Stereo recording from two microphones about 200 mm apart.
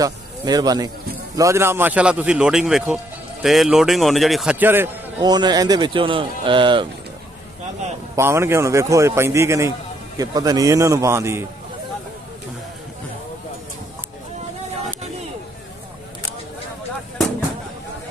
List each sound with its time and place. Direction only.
0.0 s a man's voice: 20° right (ahead or behind)
8.2 s a man's voice: 15° right (ahead or behind)